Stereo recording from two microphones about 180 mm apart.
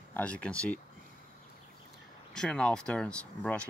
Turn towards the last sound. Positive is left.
turn(degrees=5)  # may be behind; listen again after turning